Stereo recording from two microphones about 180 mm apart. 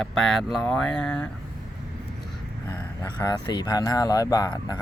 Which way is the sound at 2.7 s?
20° left (ahead or behind).